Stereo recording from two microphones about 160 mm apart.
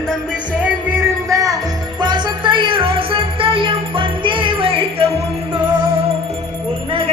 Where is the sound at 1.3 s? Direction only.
20° right (ahead or behind).